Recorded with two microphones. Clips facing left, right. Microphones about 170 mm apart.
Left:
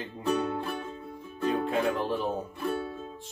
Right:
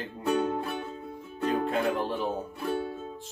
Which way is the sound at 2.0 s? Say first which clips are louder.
Left 1 dB; centre (ahead or behind).